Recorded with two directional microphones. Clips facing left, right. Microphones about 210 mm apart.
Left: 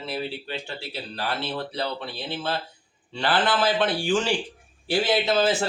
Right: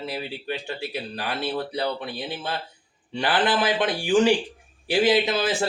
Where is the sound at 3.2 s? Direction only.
15° right (ahead or behind).